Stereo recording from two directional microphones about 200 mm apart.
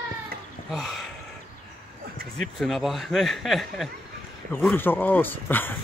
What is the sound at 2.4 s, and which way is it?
Speech, centre (ahead or behind).